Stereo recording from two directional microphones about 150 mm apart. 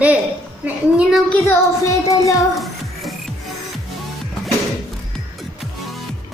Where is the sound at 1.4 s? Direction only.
20° left (ahead or behind).